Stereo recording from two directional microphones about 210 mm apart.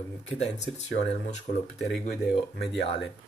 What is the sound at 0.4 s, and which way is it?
Speech, 30° left (ahead or behind).